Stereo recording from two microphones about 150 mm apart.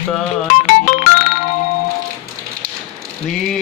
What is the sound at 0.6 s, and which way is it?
Music, 60° left (ahead or behind).